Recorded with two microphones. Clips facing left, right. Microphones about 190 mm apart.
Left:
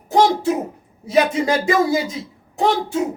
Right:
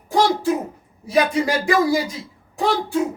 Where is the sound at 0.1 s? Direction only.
20° left (ahead or behind).